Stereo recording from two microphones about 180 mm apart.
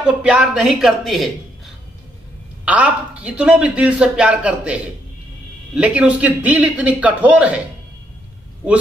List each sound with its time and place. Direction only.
0.0 s a man's voice: 5° right (ahead or behind)
2.6 s a man's voice: 10° right (ahead or behind)